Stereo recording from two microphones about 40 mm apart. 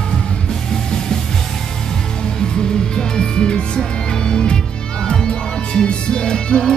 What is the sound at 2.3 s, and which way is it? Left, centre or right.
Music, centre.